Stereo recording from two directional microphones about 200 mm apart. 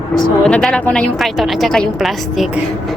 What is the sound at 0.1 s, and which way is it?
A woman's voice, 5° left (ahead or behind).